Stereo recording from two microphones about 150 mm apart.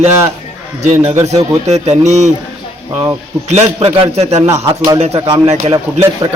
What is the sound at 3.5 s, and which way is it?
Speech, 40° right (ahead or behind).